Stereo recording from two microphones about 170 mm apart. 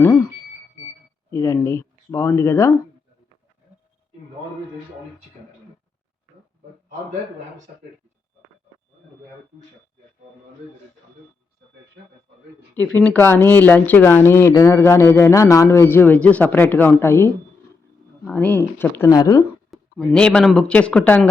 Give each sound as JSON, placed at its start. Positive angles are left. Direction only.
{"t": 1.3, "sound": "speech", "side_deg": 15}
{"t": 12.7, "sound": "speech", "side_deg": 10}
{"t": 19.7, "sound": "speech", "side_deg": 0}